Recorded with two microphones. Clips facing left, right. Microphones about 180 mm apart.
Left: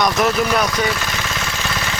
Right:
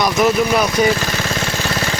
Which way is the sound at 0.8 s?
35° right (ahead or behind).